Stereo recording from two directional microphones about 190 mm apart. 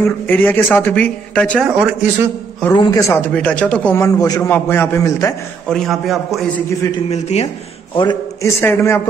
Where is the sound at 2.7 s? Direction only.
20° left (ahead or behind).